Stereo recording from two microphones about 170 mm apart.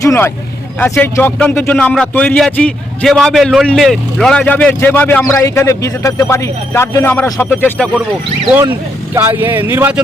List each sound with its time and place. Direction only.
0.0 s speech: 20° left (ahead or behind)
9.1 s speech: 15° right (ahead or behind)